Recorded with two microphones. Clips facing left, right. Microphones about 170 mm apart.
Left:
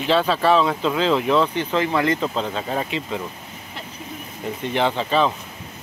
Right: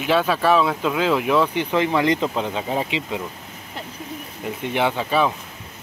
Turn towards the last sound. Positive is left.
turn(degrees=-10)  # may be behind; listen again after turning